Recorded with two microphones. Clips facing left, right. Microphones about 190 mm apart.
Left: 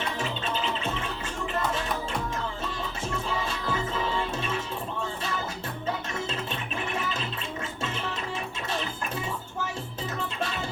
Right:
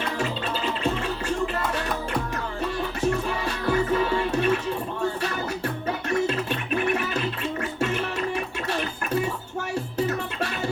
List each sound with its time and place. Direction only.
3.0 s music: 70° right (ahead or behind)